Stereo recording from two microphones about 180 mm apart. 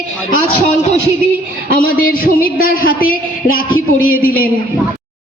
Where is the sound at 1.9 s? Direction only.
55° left (ahead or behind).